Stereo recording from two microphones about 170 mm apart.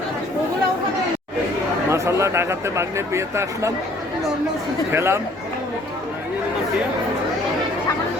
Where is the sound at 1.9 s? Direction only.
15° right (ahead or behind).